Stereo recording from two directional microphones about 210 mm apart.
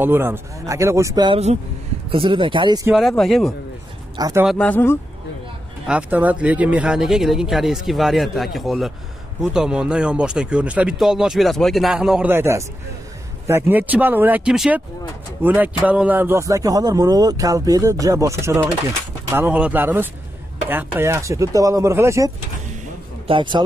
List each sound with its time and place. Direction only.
0.0 s speech: 10° right (ahead or behind)
2.9 s speech: centre (ahead or behind)
4.2 s speech: 15° right (ahead or behind)
4.5 s speech: 5° left (ahead or behind)
5.9 s speech: 5° right (ahead or behind); by 23.6 s 25° right (ahead or behind)